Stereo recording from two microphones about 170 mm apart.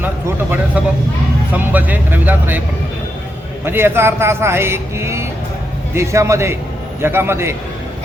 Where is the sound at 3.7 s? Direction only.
15° right (ahead or behind).